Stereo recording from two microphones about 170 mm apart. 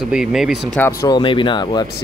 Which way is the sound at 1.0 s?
25° left (ahead or behind).